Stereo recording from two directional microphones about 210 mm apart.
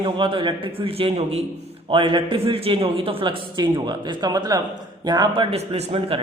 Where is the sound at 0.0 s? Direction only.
25° right (ahead or behind).